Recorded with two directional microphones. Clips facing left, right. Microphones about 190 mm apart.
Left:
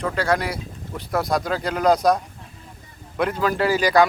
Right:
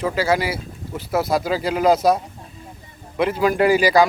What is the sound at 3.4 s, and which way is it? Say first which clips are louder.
Speech: right 5 dB; 15° right (ahead or behind).